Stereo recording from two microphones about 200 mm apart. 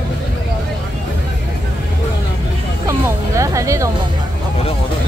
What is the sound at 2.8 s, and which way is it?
Music, 15° right (ahead or behind).